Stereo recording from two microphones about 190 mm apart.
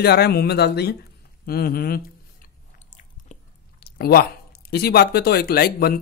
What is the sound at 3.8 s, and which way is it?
Speech, 55° left (ahead or behind).